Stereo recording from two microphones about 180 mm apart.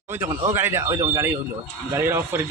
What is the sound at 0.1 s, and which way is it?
Speech, 15° right (ahead or behind).